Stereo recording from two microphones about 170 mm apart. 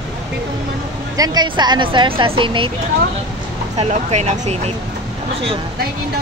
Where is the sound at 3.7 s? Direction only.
40° right (ahead or behind).